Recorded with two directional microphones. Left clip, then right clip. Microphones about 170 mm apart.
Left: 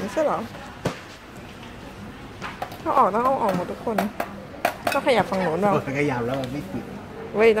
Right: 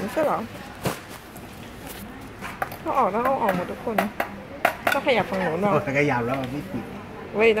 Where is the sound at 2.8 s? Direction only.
10° left (ahead or behind).